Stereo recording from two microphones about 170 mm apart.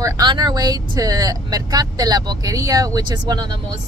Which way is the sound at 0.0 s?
25° right (ahead or behind).